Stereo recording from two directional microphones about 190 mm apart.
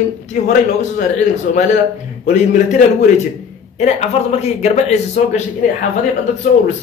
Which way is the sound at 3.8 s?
35° left (ahead or behind).